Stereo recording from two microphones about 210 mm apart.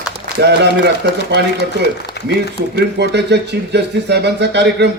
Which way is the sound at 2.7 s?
55° right (ahead or behind).